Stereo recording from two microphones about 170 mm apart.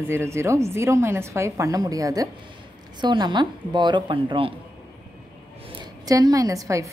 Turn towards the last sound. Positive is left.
turn(degrees=-20)  # may be behind; listen again after turning